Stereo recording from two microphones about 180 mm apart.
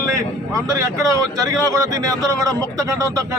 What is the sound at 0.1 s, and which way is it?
Speech, 20° right (ahead or behind).